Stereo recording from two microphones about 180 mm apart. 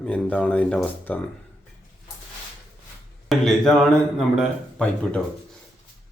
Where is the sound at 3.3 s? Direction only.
Centre (ahead or behind).